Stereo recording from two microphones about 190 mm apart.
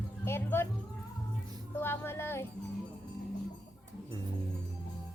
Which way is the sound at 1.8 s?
10° left (ahead or behind).